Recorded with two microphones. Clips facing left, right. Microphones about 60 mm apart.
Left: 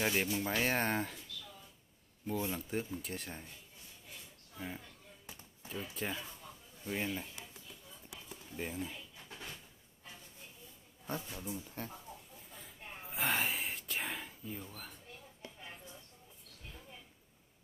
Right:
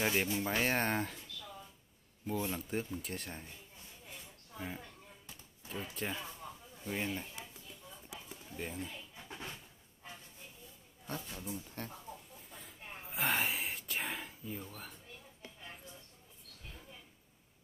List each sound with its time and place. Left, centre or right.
0.0 s speech: centre
2.2 s speech: centre
4.6 s speech: centre
6.4 s a sound: centre
6.8 s speech: centre
8.5 s speech: centre
9.1 s a sound: right
11.1 s speech: centre
12.4 s gasp: centre